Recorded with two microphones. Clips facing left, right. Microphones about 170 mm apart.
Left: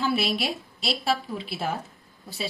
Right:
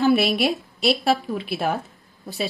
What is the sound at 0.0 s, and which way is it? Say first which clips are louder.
Speech: right 7 dB; 60° right (ahead or behind).